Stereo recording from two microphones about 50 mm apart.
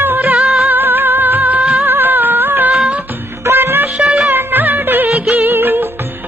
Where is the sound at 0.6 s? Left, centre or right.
Right.